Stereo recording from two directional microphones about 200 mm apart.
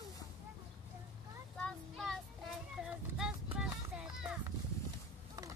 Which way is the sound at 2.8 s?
5° right (ahead or behind).